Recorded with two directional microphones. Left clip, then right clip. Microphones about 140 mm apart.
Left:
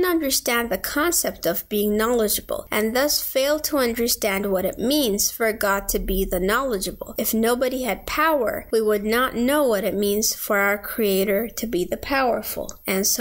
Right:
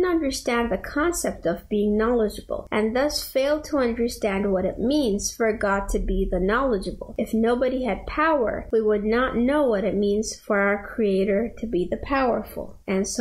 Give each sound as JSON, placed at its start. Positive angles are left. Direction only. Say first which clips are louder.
{"t": 0.0, "sound": "speech", "louder": "left 2 dB", "side_deg": 30}
{"t": 12.8, "sound": "speech", "louder": "left 3 dB", "side_deg": 25}